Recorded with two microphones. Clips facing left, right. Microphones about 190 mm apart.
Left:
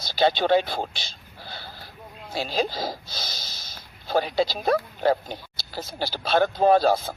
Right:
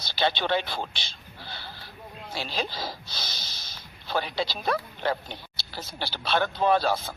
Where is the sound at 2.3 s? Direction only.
45° left (ahead or behind).